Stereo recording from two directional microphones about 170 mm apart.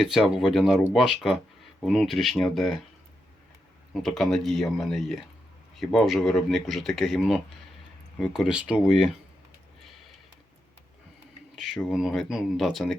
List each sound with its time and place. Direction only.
0.0 s speech: centre (ahead or behind)
4.0 s speech: centre (ahead or behind)
11.5 s speech: centre (ahead or behind)